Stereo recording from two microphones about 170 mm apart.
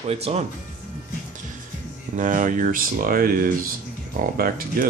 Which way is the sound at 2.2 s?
50° right (ahead or behind).